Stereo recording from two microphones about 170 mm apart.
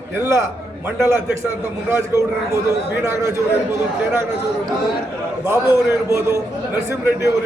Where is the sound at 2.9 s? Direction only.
15° right (ahead or behind).